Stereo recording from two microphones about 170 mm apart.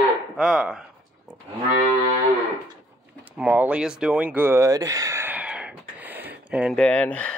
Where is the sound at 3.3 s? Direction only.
10° right (ahead or behind).